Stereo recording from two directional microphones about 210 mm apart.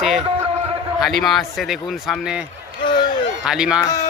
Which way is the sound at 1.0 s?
Centre (ahead or behind).